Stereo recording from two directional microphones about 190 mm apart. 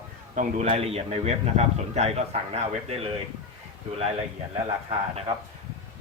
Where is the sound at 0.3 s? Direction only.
35° right (ahead or behind).